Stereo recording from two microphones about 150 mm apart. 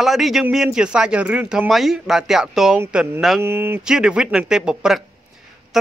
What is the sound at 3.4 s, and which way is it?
Speech, 15° right (ahead or behind).